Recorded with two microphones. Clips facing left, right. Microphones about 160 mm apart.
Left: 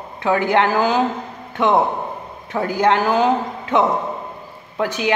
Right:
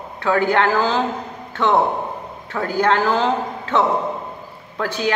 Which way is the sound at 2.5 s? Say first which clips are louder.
Left 1 dB; 20° left (ahead or behind).